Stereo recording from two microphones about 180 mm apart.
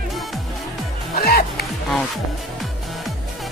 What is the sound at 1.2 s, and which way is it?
Music, 60° left (ahead or behind).